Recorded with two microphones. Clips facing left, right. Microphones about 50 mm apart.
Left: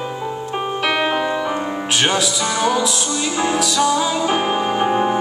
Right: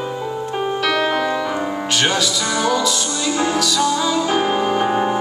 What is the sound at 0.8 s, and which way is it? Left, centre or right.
Music, centre.